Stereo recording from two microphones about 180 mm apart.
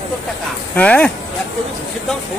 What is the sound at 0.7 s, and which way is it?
Speech, 5° left (ahead or behind).